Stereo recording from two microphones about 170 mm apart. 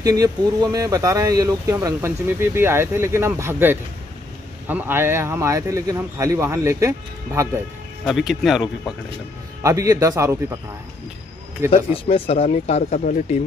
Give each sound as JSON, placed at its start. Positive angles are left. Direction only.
{"t": 0.0, "sound": "speech", "side_deg": -20}
{"t": 8.0, "sound": "speech", "side_deg": 0}
{"t": 9.6, "sound": "speech", "side_deg": -20}
{"t": 11.7, "sound": "speech", "side_deg": 35}